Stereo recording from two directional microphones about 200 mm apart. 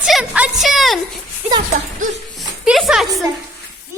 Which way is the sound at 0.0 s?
5° right (ahead or behind).